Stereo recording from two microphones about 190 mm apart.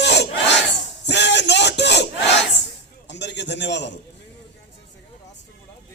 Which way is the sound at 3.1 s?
65° left (ahead or behind).